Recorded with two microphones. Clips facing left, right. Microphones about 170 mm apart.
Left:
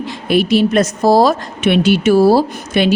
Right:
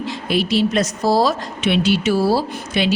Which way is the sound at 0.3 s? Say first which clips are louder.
Left 6 dB; 55° left (ahead or behind).